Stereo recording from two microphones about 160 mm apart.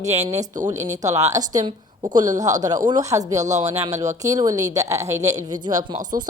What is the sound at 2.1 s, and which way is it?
Speech, 50° right (ahead or behind).